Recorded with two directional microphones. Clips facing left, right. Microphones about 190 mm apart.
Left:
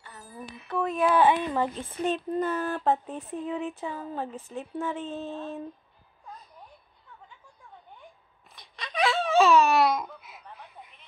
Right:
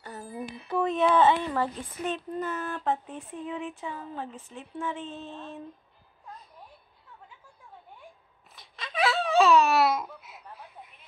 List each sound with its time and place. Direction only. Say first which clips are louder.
0.0 s music: right 8 dB; 35° right (ahead or behind)
0.7 s speech: right 1 dB; centre (ahead or behind)
1.9 s speech: left 4 dB; 30° left (ahead or behind)
8.5 s laughter: left 1 dB; centre (ahead or behind)